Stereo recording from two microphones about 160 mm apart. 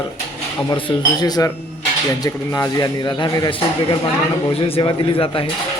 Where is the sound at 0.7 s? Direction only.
30° left (ahead or behind).